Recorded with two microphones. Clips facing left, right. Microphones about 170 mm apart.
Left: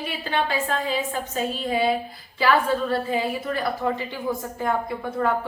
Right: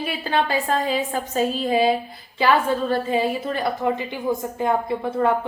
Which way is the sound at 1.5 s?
30° right (ahead or behind).